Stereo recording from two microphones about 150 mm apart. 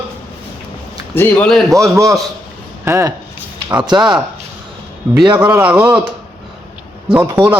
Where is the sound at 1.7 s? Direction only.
20° right (ahead or behind).